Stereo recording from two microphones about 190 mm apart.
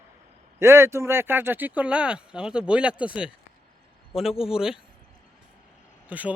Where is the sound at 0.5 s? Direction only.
15° right (ahead or behind).